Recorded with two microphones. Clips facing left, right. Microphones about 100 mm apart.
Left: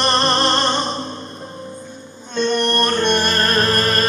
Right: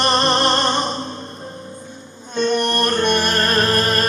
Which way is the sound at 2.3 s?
5° right (ahead or behind).